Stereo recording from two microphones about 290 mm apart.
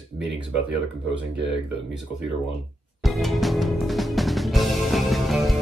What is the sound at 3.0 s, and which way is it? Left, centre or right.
Music, centre.